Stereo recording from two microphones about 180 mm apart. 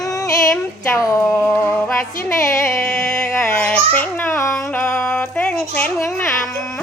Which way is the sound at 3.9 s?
10° left (ahead or behind).